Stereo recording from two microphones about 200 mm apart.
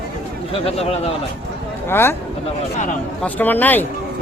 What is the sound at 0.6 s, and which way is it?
Speech, 30° left (ahead or behind).